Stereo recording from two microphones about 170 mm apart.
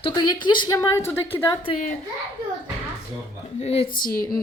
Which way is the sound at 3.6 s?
35° left (ahead or behind).